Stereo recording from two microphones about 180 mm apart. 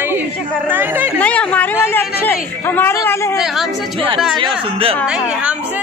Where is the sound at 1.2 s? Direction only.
5° left (ahead or behind).